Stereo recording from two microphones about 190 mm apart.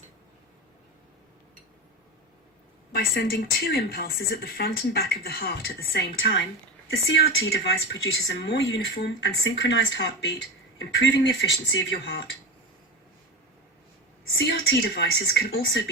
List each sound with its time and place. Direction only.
2.9 s a woman's voice: 55° left (ahead or behind)
7.1 s speech: 60° left (ahead or behind)
14.3 s a woman's voice: 65° left (ahead or behind)